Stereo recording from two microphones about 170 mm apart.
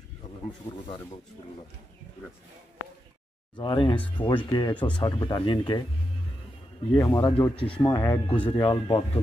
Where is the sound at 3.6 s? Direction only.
30° left (ahead or behind).